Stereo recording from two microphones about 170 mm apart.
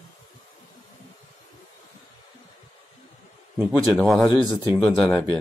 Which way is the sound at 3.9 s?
Centre (ahead or behind).